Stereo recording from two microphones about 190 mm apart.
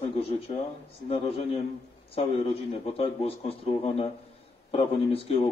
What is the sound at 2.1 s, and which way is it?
A man's voice, 30° left (ahead or behind).